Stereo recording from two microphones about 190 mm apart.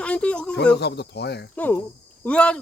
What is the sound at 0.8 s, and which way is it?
Speech, 60° left (ahead or behind).